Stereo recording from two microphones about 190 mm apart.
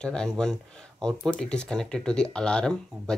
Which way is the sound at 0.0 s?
5° left (ahead or behind).